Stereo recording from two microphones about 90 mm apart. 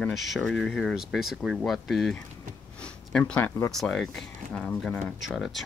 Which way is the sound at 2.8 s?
10° left (ahead or behind).